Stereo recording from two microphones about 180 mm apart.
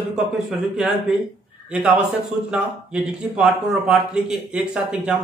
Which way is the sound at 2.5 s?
5° right (ahead or behind).